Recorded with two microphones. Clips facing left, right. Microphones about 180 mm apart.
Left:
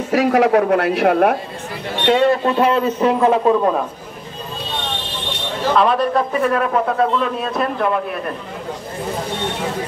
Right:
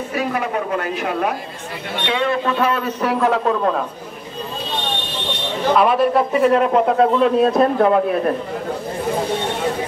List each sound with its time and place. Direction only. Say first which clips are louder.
0.1 s a woman's voice: left 10 dB; 90° left; by 1.4 s 60° left (ahead or behind)
2.0 s a man's voice: left 6 dB; 40° left (ahead or behind); by 3.8 s 10° left (ahead or behind)
5.7 s a man's voice: right 1 dB; 5° right (ahead or behind)
6.3 s a man's voice: right 3 dB; 20° right (ahead or behind); by 8.0 s 35° right (ahead or behind)